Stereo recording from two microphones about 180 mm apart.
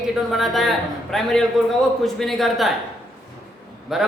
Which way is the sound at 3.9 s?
Centre (ahead or behind).